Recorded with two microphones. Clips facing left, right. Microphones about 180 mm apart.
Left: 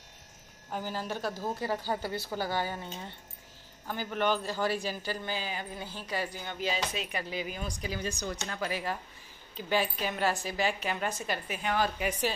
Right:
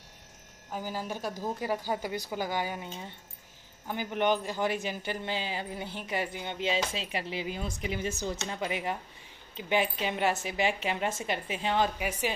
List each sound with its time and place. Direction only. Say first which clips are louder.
0.7 s speech: even; 10° right (ahead or behind); by 11.9 s 25° right (ahead or behind)
12.0 s speech: left 1 dB; 10° right (ahead or behind)